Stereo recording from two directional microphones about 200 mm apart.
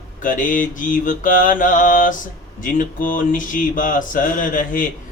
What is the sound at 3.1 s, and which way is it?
Mantra, 40° left (ahead or behind).